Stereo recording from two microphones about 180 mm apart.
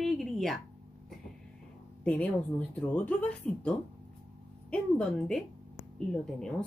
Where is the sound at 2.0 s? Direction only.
10° left (ahead or behind).